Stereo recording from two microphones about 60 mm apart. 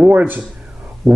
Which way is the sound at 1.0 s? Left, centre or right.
Centre.